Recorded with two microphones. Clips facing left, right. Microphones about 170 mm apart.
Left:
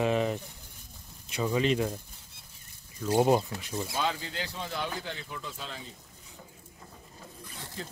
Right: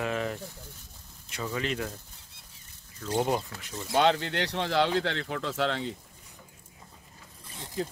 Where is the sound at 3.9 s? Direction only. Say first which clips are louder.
Right 11 dB; 75° right (ahead or behind).